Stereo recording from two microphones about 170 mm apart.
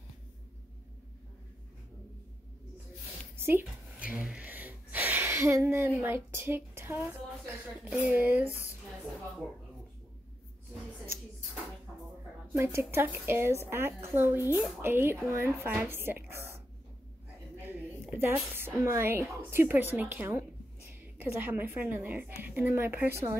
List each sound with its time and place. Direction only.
3.3 s a sound: 15° right (ahead or behind)
3.6 s speech: 5° right (ahead or behind)
8.5 s speech: 15° left (ahead or behind)
12.5 s a woman's voice: 15° right (ahead or behind)